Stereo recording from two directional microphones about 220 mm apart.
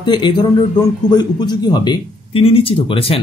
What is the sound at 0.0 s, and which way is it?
Speech, 20° left (ahead or behind).